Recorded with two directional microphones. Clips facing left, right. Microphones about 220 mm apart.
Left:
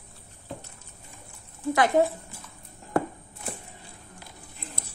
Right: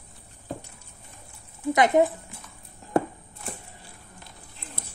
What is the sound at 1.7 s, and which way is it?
Speech, 20° right (ahead or behind).